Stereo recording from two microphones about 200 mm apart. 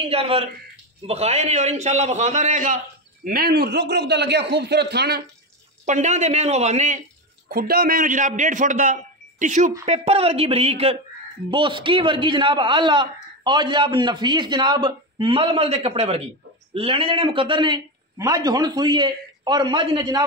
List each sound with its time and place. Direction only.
0.1 s a man's voice: 30° right (ahead or behind); by 5.2 s 55° right (ahead or behind)
5.9 s a man's voice: 35° right (ahead or behind)
7.4 s a man's voice: 50° right (ahead or behind); by 20.2 s 20° right (ahead or behind)